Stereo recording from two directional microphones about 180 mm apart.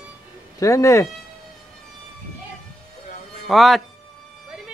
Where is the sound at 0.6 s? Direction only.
15° left (ahead or behind).